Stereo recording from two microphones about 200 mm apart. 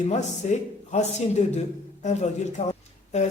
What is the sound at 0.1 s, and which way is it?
A man's voice, 35° left (ahead or behind).